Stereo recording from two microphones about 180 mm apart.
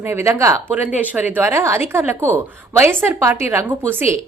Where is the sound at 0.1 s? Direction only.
15° right (ahead or behind).